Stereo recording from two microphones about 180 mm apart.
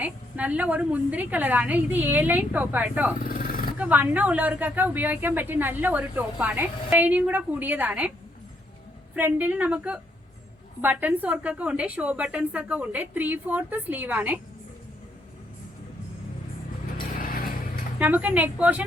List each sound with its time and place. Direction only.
0.0 s a woman's voice: 10° right (ahead or behind)
3.2 s a sound: 50° left (ahead or behind)
3.8 s a woman's voice: 10° right (ahead or behind)
9.1 s a woman's voice: 10° right (ahead or behind)
17.2 s a sound: 55° left (ahead or behind)
18.0 s a woman's voice: 10° right (ahead or behind)